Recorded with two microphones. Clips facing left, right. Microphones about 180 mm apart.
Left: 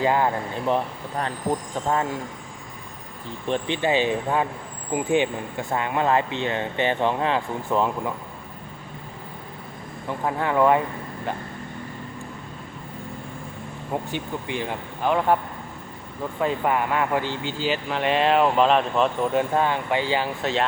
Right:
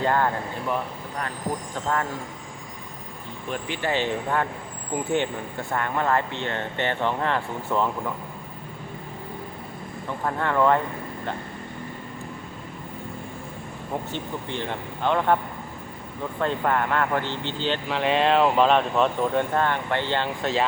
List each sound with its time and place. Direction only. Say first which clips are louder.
0.0 s speech: left 2 dB; 15° left (ahead or behind)
3.5 s speech: left 4 dB; 20° left (ahead or behind)
10.2 s speech: left 2 dB; 10° left (ahead or behind)
13.9 s speech: left 2 dB; 10° left (ahead or behind)
16.4 s speech: left 1 dB; 10° left (ahead or behind)